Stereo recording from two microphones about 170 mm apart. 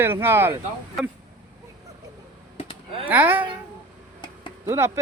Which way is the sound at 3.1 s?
10° right (ahead or behind).